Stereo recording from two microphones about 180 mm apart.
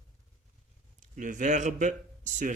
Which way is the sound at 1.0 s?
45° right (ahead or behind).